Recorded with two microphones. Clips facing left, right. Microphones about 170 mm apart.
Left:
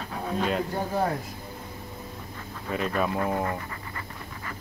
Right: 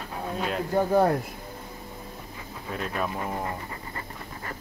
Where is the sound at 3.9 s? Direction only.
40° right (ahead or behind).